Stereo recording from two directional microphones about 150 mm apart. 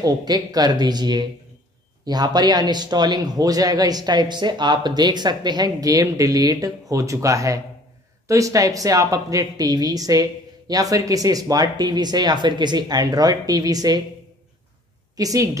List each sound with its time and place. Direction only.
0.0 s a man's voice: 25° right (ahead or behind)
15.1 s a man's voice: 25° right (ahead or behind)